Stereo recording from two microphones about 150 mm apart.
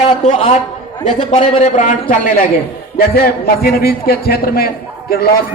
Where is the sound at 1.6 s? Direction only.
55° left (ahead or behind).